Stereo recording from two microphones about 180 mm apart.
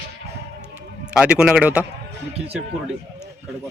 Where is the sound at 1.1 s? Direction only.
5° right (ahead or behind).